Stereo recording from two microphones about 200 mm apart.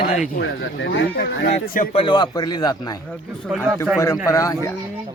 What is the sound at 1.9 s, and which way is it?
A man's voice, 25° left (ahead or behind).